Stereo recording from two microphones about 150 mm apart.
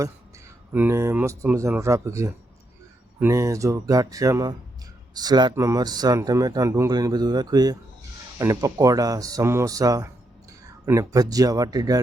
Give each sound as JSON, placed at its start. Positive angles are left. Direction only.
{"t": 0.7, "sound": "a man's voice", "side_deg": -15}